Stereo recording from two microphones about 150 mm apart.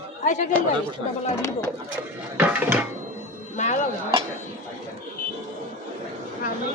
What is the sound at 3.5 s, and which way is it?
Speech, 55° left (ahead or behind).